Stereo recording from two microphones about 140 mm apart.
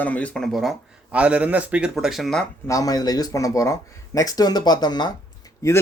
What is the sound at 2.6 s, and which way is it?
Speech, 25° left (ahead or behind).